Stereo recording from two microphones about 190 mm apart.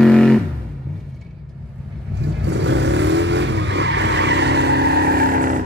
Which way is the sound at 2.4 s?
70° right (ahead or behind).